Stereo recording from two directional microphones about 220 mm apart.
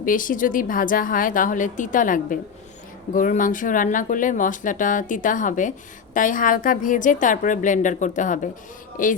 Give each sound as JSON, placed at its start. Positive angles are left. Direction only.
{"t": 0.0, "sound": "speech", "side_deg": 40}